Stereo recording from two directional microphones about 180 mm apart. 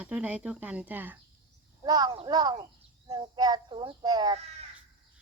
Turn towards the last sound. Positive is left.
turn(degrees=-20)  # may be behind; listen again after turning